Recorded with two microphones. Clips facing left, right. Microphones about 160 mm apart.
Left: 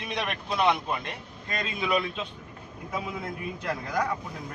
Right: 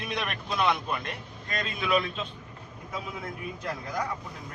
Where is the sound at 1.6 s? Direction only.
15° left (ahead or behind).